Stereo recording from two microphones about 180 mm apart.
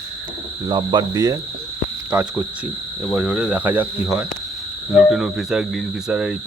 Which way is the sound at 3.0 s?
5° right (ahead or behind).